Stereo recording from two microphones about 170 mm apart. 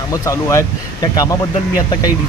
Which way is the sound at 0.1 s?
15° left (ahead or behind).